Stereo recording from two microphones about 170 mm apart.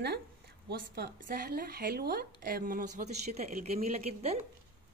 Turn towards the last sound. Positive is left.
turn(degrees=-40)  # may be behind; listen again after turning